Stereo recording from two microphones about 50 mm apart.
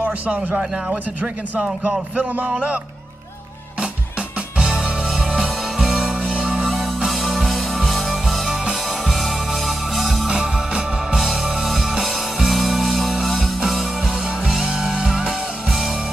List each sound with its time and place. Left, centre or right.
0.0 s a man's voice: right
2.4 s a man's voice: centre
4.6 s music: centre
10.3 s music: centre